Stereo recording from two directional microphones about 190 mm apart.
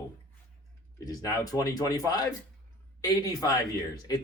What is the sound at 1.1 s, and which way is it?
Speech, 20° left (ahead or behind).